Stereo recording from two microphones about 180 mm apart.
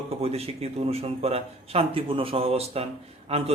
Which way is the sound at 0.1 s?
35° right (ahead or behind).